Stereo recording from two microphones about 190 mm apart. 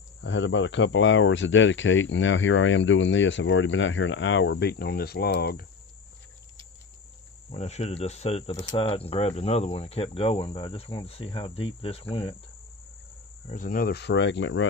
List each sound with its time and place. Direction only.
0.2 s speech: 75° left (ahead or behind); by 5.7 s 55° left (ahead or behind)
7.4 s speech: 35° left (ahead or behind)
13.5 s speech: 45° left (ahead or behind); by 14.7 s 80° left